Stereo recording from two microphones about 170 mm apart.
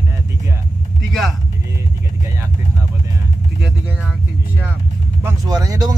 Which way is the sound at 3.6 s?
5° right (ahead or behind).